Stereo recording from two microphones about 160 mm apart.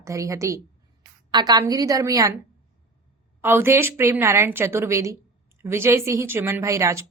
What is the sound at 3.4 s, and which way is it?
A woman's voice, 15° right (ahead or behind).